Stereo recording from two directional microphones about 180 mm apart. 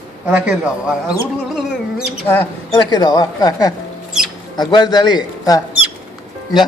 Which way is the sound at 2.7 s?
20° left (ahead or behind).